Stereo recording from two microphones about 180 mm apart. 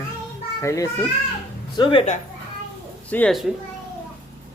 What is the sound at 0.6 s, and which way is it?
Speech, 15° left (ahead or behind).